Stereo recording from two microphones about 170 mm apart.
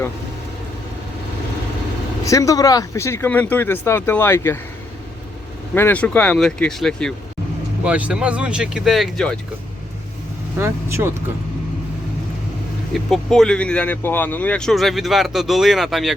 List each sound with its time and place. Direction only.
2.2 s speech: 20° left (ahead or behind)
5.7 s speech: 10° left (ahead or behind)
7.9 s speech: 5° right (ahead or behind)
10.6 s speech: 15° right (ahead or behind)
12.9 s speech: centre (ahead or behind)